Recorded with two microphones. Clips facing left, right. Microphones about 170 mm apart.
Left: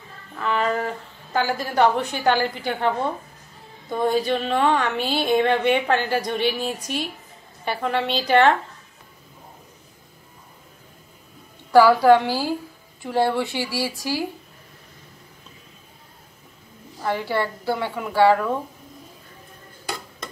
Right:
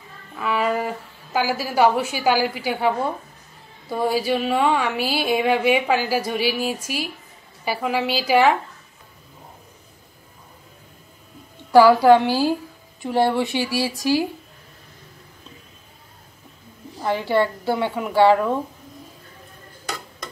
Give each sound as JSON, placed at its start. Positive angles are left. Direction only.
{"t": 0.4, "sound": "a woman's voice", "side_deg": -5}
{"t": 11.7, "sound": "a woman's voice", "side_deg": -15}
{"t": 17.0, "sound": "a woman's voice", "side_deg": -20}